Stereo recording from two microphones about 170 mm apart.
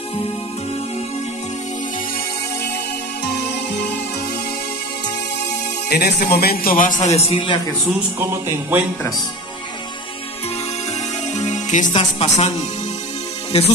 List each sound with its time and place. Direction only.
5.9 s a man's voice: 70° left (ahead or behind); by 7.6 s 30° left (ahead or behind)
8.2 s speech: 10° right (ahead or behind)
11.3 s music: 45° left (ahead or behind)
11.9 s speech: 35° left (ahead or behind)